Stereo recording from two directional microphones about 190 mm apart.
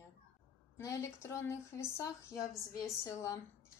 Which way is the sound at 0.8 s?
15° left (ahead or behind).